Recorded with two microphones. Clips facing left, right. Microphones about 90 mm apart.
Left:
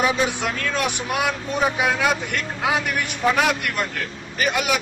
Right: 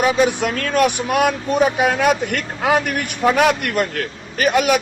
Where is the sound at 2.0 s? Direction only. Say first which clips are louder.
Right 5 dB; 55° right (ahead or behind).